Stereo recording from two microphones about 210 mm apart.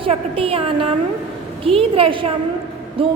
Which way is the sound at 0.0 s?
25° right (ahead or behind).